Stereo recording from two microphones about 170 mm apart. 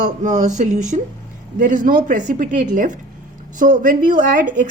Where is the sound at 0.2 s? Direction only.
45° right (ahead or behind).